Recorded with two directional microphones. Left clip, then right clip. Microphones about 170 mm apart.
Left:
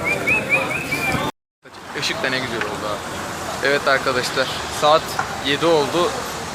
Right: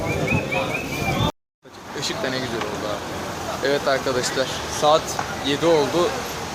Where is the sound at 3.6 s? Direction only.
5° left (ahead or behind).